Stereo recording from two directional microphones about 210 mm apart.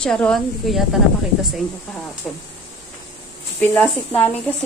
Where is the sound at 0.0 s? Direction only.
5° left (ahead or behind).